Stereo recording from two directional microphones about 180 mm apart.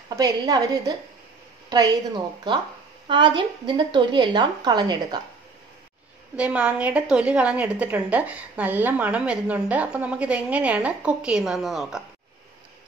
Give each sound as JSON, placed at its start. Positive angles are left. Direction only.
{"t": 0.1, "sound": "a woman's voice", "side_deg": -20}
{"t": 6.3, "sound": "a woman's voice", "side_deg": -5}